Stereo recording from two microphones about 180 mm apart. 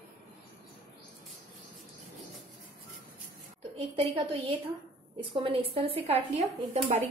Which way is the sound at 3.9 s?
30° right (ahead or behind).